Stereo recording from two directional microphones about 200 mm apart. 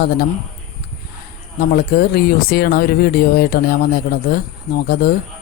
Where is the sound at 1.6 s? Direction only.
50° left (ahead or behind).